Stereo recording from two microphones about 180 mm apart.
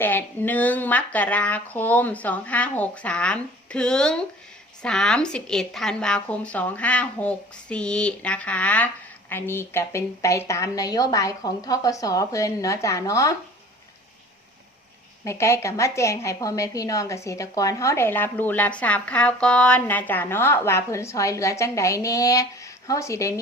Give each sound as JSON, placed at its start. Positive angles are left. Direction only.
{"t": 0.0, "sound": "a woman's voice", "side_deg": 10}
{"t": 15.2, "sound": "a woman's voice", "side_deg": 15}